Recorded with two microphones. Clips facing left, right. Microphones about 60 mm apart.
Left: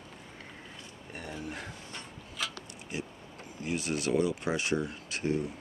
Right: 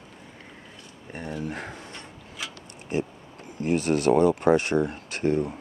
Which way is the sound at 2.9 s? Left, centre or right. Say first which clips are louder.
Right 10 dB; right.